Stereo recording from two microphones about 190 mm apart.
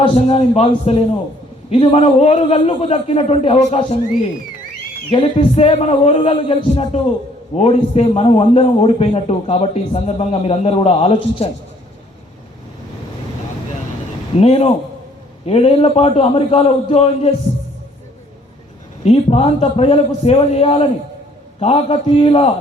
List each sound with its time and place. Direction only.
0.0 s a man's voice: 30° left (ahead or behind)
5.1 s a man's voice: 30° left (ahead or behind)
14.3 s a man's voice: 30° left (ahead or behind)
19.0 s a man's voice: 30° left (ahead or behind)